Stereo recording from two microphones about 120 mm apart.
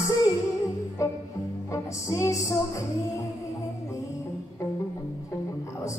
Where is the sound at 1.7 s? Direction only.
25° left (ahead or behind).